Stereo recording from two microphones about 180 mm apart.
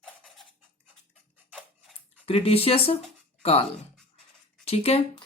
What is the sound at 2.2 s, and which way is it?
Speech, 30° left (ahead or behind).